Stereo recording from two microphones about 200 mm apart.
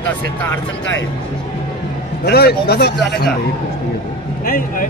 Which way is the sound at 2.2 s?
55° left (ahead or behind).